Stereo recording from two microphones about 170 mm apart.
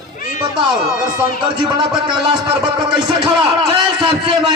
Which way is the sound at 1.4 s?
30° right (ahead or behind).